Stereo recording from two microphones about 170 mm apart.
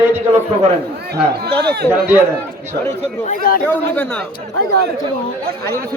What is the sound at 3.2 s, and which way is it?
Speech, 55° left (ahead or behind).